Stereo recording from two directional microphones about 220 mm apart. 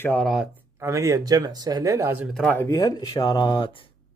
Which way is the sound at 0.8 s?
15° right (ahead or behind).